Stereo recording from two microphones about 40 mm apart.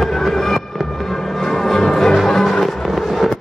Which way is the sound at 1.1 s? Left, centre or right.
Centre.